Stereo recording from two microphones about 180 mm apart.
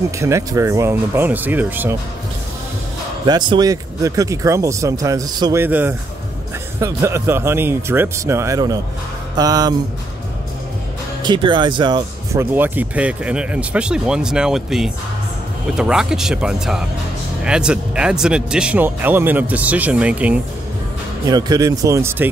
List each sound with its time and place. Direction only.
0.2 s speech: 15° right (ahead or behind)
3.3 s speech: 25° right (ahead or behind)
11.2 s speech: 25° right (ahead or behind)
12.5 s speech: 10° right (ahead or behind)
21.3 s speech: 20° right (ahead or behind)